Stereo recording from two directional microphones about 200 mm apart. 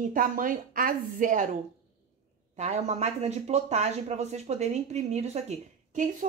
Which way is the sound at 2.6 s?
35° right (ahead or behind).